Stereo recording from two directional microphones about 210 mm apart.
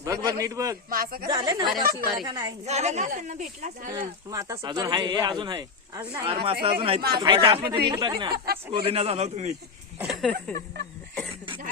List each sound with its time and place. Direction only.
0.0 s a man's voice: 15° right (ahead or behind)
0.9 s speech: 45° right (ahead or behind)
1.3 s speech: 20° right (ahead or behind)
1.8 s speech: 45° right (ahead or behind)
2.2 s a man's voice: 15° right (ahead or behind)
2.6 s speech: 30° right (ahead or behind)
4.3 s speech: 15° right (ahead or behind); by 9.6 s 35° right (ahead or behind)
10.0 s speech: centre (ahead or behind)